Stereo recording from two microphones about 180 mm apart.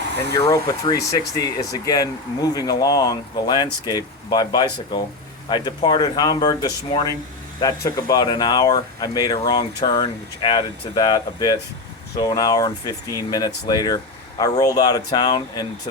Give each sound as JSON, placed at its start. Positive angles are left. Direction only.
{"t": 0.3, "sound": "speech", "side_deg": 20}